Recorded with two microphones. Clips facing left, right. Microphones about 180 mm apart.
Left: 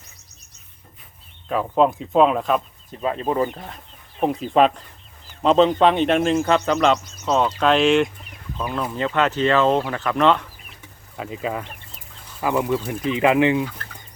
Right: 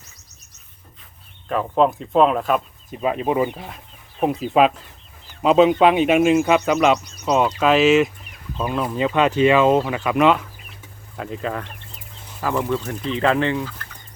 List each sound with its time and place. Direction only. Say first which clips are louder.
1.5 s speech: even; centre (ahead or behind)
2.9 s speech: right 2 dB; 15° right (ahead or behind)
8.5 s speech: right 3 dB; 20° right (ahead or behind)
8.8 s speech: right 2 dB; 10° right (ahead or behind)
11.2 s speech: even; 5° left (ahead or behind)